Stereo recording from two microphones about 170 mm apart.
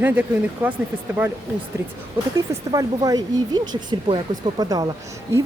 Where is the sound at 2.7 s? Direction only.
20° right (ahead or behind).